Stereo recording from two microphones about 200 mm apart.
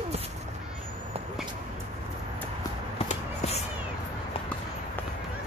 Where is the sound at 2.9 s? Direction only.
30° left (ahead or behind).